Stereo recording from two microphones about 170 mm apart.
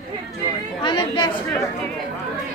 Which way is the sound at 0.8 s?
30° left (ahead or behind).